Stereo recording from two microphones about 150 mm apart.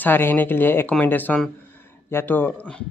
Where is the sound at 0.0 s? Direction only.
15° left (ahead or behind).